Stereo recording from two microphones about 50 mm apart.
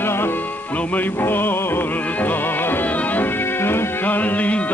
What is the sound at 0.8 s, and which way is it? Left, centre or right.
Music, left.